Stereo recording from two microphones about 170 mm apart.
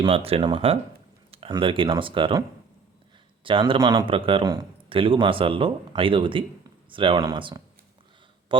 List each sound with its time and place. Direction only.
0.0 s a man's voice: 35° right (ahead or behind)
3.4 s a man's voice: 30° right (ahead or behind)